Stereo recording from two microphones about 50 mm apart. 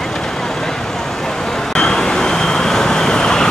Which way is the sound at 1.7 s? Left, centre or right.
Centre.